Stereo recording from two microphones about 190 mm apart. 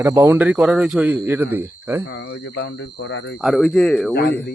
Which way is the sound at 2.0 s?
70° left (ahead or behind).